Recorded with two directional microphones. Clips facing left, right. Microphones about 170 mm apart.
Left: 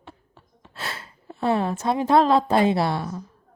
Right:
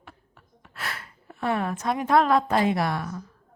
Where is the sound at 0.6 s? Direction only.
25° left (ahead or behind).